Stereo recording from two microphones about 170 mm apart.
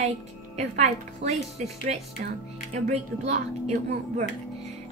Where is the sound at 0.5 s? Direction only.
40° right (ahead or behind).